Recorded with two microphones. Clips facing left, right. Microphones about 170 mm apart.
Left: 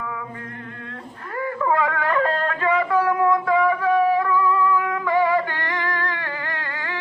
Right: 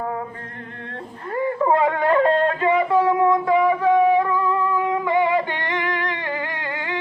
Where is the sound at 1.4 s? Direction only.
25° right (ahead or behind).